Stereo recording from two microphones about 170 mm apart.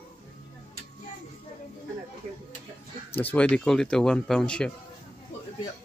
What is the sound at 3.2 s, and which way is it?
A man's voice, 10° left (ahead or behind).